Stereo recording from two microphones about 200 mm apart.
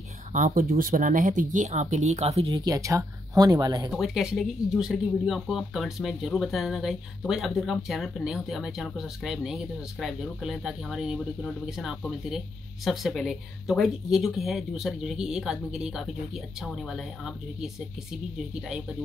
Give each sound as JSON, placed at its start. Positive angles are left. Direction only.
{"t": 0.3, "sound": "speech", "side_deg": -40}
{"t": 3.9, "sound": "speech", "side_deg": 0}